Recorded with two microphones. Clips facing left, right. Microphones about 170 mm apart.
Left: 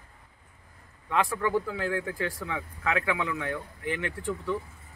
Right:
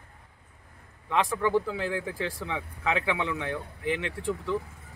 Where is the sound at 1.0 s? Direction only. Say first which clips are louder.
Right 1 dB; centre (ahead or behind).